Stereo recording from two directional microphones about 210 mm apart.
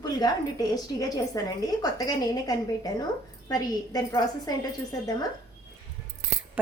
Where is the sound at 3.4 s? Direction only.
15° left (ahead or behind).